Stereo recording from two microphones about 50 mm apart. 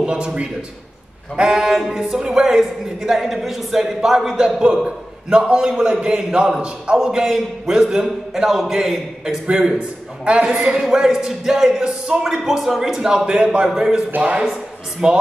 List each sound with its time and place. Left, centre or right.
0.0 s a man's voice: centre
14.1 s speech: right
14.4 s speech: centre